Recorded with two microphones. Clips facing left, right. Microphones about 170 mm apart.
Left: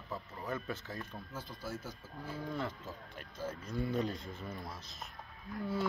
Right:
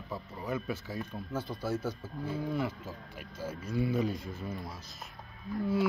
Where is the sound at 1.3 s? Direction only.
70° right (ahead or behind).